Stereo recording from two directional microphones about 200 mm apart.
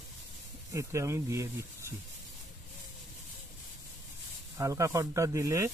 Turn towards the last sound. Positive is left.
turn(degrees=-15)  # may be behind; listen again after turning